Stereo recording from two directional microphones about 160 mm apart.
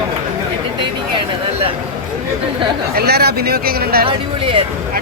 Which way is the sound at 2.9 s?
80° right.